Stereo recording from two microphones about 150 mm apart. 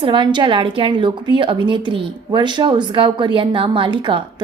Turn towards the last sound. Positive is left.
turn(degrees=-35)  # may be behind; listen again after turning